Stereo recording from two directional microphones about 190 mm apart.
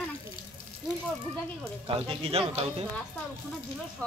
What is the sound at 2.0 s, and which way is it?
Speech, 30° right (ahead or behind).